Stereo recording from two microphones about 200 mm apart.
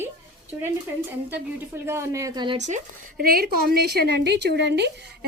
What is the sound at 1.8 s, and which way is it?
Speech, 15° right (ahead or behind).